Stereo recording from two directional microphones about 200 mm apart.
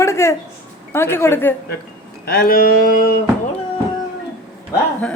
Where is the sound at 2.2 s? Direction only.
50° left (ahead or behind).